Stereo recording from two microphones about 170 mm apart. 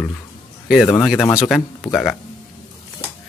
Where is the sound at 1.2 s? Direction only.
15° left (ahead or behind).